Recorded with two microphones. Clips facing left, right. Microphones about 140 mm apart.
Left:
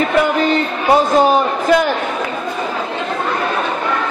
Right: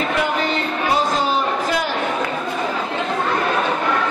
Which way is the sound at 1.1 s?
55° left (ahead or behind).